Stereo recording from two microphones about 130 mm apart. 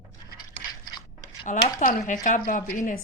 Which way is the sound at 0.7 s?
30° left (ahead or behind).